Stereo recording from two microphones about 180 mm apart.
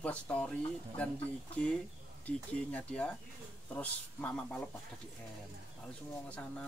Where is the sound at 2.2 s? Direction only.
10° left (ahead or behind).